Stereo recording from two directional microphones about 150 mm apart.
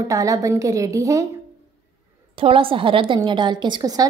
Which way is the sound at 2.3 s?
35° right (ahead or behind).